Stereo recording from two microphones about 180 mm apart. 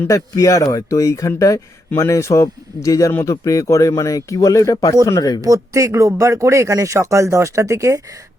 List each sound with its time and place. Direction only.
0.0 s speech: 20° left (ahead or behind)
5.4 s speech: 20° right (ahead or behind)